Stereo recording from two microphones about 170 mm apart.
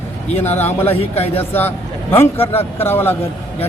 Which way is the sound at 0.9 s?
35° left (ahead or behind).